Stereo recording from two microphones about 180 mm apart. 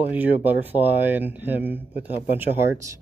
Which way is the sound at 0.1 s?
10° right (ahead or behind).